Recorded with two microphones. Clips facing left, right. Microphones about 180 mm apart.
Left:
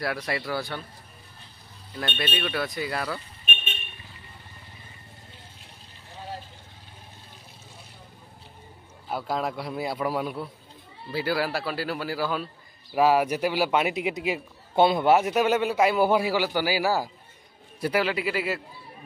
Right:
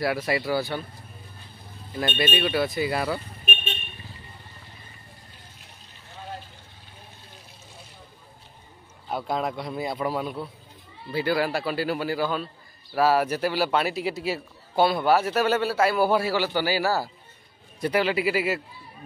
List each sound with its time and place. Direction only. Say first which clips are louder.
0.0 s speech: right 4 dB; 5° right (ahead or behind)
2.1 s speech: right 5 dB; 5° right (ahead or behind)
9.1 s a man's voice: right 1 dB; centre (ahead or behind)